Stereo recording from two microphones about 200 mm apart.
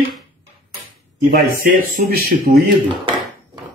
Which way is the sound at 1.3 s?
45° right (ahead or behind).